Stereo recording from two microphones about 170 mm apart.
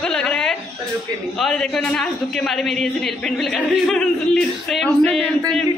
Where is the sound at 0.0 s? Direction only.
5° left (ahead or behind).